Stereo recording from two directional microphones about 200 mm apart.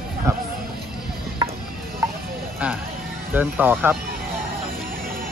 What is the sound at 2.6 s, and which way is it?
Speech, 5° right (ahead or behind).